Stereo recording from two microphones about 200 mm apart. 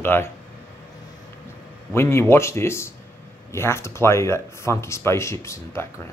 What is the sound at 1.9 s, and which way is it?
Speech, 10° left (ahead or behind).